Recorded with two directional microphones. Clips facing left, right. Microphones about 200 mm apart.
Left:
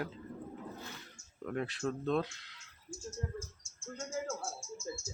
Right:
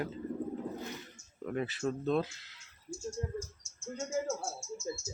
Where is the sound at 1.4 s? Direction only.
5° right (ahead or behind).